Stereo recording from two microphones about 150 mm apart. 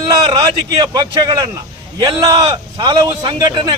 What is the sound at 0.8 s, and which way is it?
A man's voice, 25° right (ahead or behind).